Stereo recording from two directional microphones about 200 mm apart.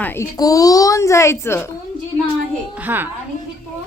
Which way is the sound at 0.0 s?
10° left (ahead or behind).